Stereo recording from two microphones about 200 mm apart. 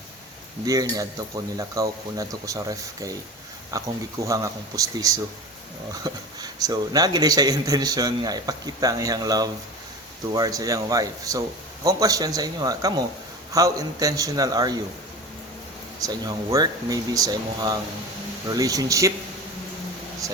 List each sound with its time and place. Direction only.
0.6 s a man's voice: 20° right (ahead or behind)
16.0 s a man's voice: 20° right (ahead or behind)
20.2 s a man's voice: 15° right (ahead or behind)